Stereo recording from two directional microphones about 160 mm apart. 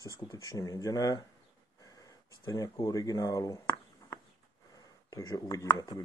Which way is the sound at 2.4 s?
20° left (ahead or behind).